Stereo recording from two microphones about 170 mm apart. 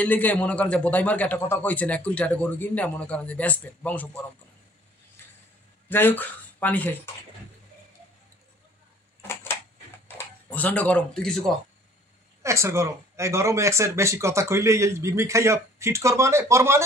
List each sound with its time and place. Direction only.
0.0 s a man's voice: 10° left (ahead or behind)
5.9 s speech: 10° left (ahead or behind)
9.3 s a sound: 15° left (ahead or behind)
10.0 s speech: 10° left (ahead or behind)
12.4 s speech: 15° right (ahead or behind)